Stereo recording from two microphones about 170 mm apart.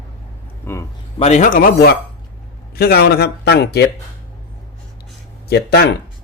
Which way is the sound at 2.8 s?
65° left (ahead or behind).